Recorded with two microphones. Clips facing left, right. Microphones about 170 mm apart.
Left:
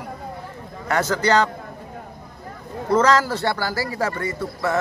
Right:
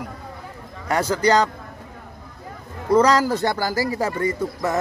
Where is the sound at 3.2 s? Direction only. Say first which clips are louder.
Right 2 dB; 15° right (ahead or behind).